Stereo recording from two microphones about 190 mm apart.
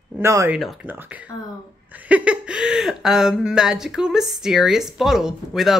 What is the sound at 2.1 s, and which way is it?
Speech, 5° right (ahead or behind).